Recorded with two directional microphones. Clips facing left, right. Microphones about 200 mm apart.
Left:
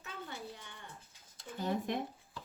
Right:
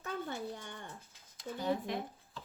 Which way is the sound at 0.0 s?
50° right (ahead or behind).